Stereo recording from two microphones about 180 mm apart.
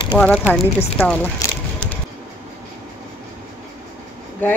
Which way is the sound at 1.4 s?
20° left (ahead or behind).